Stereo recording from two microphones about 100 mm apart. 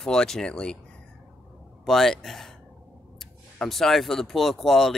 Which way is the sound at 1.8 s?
Centre (ahead or behind).